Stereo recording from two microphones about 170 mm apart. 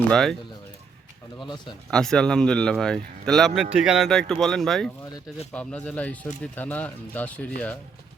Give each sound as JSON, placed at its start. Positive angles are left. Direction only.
{"t": 0.1, "sound": "speech", "side_deg": 0}
{"t": 1.4, "sound": "speech", "side_deg": 25}
{"t": 1.9, "sound": "speech", "side_deg": 5}